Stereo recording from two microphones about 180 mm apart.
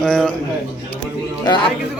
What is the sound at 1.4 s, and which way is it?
Speech, 25° left (ahead or behind).